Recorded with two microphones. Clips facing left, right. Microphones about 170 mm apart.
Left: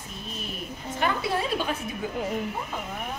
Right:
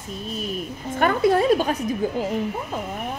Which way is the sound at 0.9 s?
50° right (ahead or behind).